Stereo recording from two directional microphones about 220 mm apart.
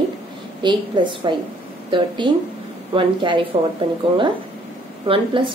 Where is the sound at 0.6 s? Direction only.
20° right (ahead or behind).